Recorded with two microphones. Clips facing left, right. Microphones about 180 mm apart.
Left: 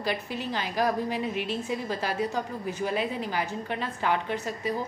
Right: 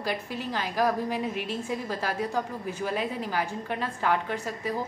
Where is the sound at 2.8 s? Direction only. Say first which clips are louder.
Left 1 dB; 10° left (ahead or behind).